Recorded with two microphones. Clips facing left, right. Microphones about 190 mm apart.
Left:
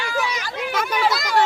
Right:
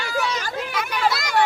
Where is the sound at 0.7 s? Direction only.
45° left (ahead or behind).